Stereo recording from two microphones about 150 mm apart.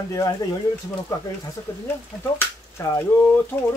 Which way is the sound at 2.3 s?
20° left (ahead or behind).